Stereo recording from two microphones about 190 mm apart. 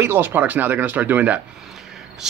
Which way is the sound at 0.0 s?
10° right (ahead or behind).